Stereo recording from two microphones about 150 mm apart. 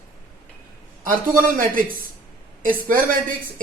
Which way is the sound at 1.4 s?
70° right (ahead or behind).